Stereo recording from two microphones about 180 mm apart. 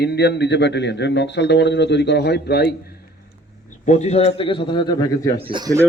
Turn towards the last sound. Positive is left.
turn(degrees=-20)  # may be behind; listen again after turning